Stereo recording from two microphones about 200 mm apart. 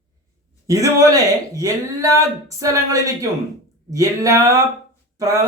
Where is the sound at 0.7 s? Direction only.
15° right (ahead or behind).